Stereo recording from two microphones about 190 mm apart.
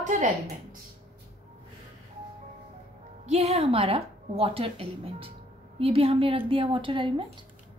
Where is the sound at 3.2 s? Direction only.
35° right (ahead or behind).